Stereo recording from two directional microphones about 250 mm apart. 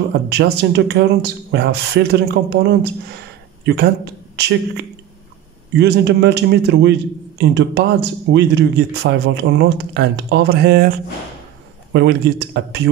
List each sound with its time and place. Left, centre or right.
0.3 s a man's voice: right
11.9 s speech: right